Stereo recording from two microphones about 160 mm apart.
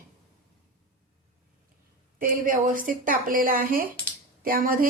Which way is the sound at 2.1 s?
60° right (ahead or behind).